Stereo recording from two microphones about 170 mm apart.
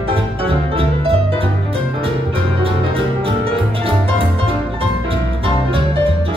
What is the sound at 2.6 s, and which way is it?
Music, 35° right (ahead or behind).